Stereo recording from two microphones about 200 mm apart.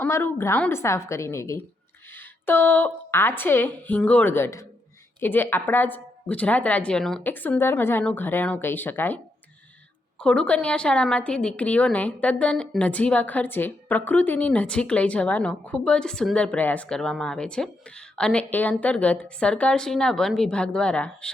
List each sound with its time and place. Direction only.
0.0 s speech: 10° left (ahead or behind)
10.2 s a woman's voice: 5° left (ahead or behind)